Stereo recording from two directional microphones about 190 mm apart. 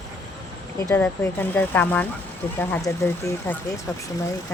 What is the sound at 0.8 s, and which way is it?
Speech, 10° left (ahead or behind).